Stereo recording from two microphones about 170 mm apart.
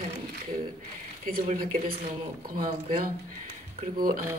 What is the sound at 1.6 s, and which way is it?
Speech, 55° right (ahead or behind).